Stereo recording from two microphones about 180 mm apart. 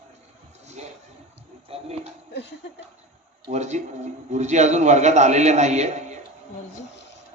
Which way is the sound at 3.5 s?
40° right (ahead or behind).